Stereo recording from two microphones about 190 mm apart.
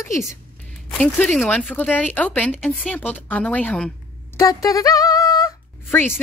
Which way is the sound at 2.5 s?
5° right (ahead or behind).